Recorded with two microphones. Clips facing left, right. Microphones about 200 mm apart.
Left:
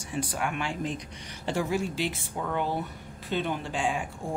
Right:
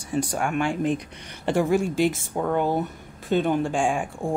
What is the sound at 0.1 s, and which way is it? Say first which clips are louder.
Speech: right 6 dB; 45° right (ahead or behind).